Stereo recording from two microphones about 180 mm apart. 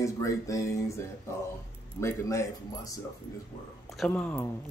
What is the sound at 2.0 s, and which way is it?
Speech, 15° left (ahead or behind).